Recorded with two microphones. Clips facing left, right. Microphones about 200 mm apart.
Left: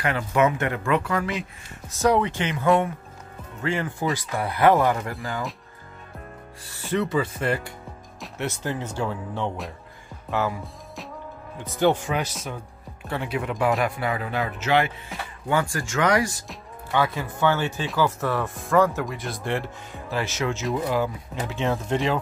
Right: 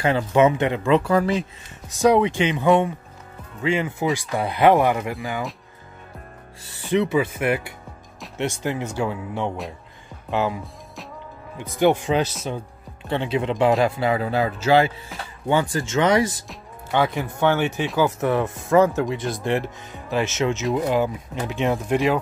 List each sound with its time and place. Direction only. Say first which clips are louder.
0.0 s speech: right 4 dB; 25° right (ahead or behind)
1.9 s speech: right 4 dB; 15° right (ahead or behind)
6.9 s speech: right 4 dB; 10° right (ahead or behind); by 14.9 s 30° right (ahead or behind)
15.4 s speech: right 4 dB; 20° right (ahead or behind)